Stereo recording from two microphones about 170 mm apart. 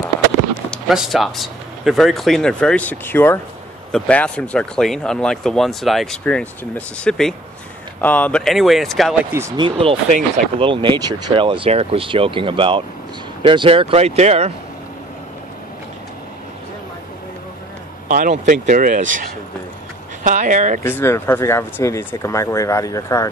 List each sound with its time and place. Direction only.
0.7 s speech: centre (ahead or behind)
9.6 s speech: 30° right (ahead or behind)
18.0 s speech: 50° right (ahead or behind)
20.8 s speech: 15° left (ahead or behind)